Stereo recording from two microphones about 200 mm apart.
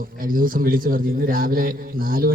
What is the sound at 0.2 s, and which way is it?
A man's voice, 45° right (ahead or behind).